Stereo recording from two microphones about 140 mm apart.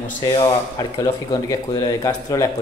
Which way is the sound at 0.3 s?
25° left (ahead or behind).